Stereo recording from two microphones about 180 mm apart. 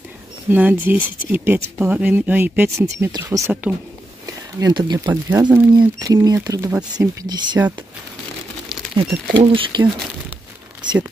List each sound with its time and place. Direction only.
0.5 s speech: 10° right (ahead or behind)
4.6 s speech: 20° right (ahead or behind)
8.9 s speech: 30° right (ahead or behind)